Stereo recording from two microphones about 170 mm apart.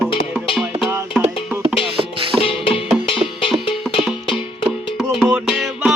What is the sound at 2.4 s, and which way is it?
Music, 35° left (ahead or behind).